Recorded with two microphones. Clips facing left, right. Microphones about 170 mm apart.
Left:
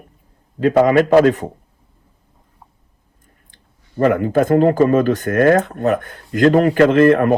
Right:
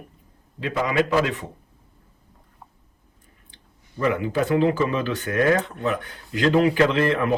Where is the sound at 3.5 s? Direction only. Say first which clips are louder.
Left 10 dB; 55° left (ahead or behind).